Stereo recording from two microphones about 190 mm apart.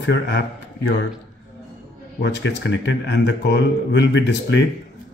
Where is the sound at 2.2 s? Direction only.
70° left (ahead or behind).